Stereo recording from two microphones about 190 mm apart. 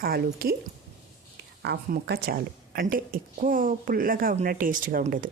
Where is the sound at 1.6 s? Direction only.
60° right (ahead or behind).